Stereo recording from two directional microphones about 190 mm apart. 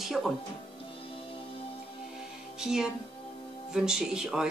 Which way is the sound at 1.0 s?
30° left (ahead or behind).